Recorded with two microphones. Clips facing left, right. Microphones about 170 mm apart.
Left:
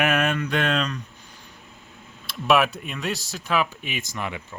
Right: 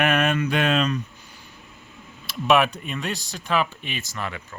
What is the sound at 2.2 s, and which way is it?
Speech, centre (ahead or behind).